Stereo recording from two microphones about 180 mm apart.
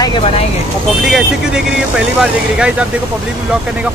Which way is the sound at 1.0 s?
Centre (ahead or behind).